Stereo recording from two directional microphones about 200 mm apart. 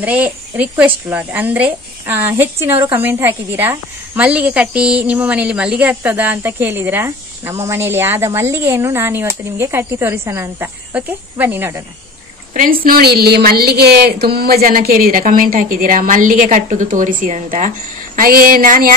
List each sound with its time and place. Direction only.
0.0 s a woman's voice: 10° right (ahead or behind)
12.5 s a woman's voice: 45° right (ahead or behind)